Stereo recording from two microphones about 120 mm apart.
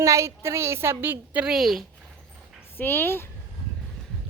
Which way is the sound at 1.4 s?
5° right (ahead or behind).